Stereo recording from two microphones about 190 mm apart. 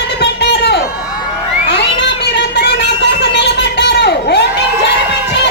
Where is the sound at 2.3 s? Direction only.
65° left (ahead or behind).